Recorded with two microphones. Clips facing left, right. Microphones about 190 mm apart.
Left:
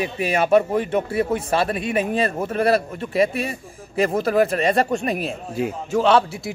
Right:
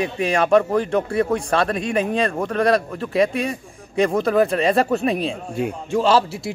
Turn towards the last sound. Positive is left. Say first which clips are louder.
# even
turn(degrees=0)  # may be behind; listen again after turning